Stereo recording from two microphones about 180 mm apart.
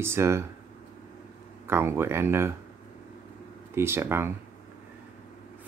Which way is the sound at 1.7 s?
15° right (ahead or behind).